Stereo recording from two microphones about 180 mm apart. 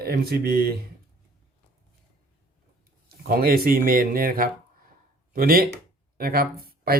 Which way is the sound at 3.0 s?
55° right (ahead or behind).